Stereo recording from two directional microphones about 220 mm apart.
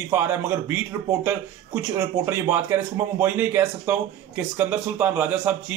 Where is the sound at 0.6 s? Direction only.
10° right (ahead or behind).